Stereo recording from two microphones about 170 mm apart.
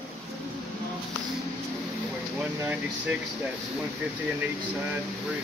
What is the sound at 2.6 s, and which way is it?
Speech, 10° right (ahead or behind).